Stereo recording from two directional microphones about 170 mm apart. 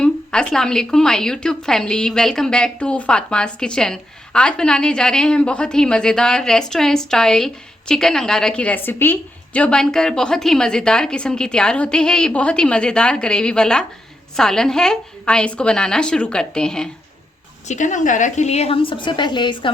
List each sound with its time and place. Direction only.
0.0 s a woman's voice: 5° left (ahead or behind)
17.7 s a woman's voice: 45° left (ahead or behind); by 19.7 s 25° left (ahead or behind)